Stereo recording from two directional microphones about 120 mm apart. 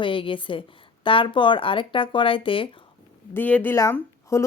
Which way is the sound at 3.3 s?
15° left (ahead or behind).